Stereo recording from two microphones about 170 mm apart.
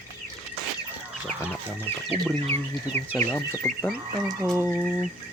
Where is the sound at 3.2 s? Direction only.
15° left (ahead or behind).